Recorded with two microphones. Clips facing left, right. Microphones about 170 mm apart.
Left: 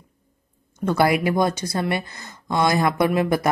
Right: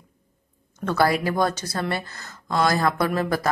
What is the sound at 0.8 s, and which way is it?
A woman's voice, 15° left (ahead or behind).